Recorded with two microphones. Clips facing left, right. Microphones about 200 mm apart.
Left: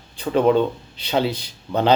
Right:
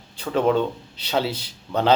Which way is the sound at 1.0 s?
5° right (ahead or behind).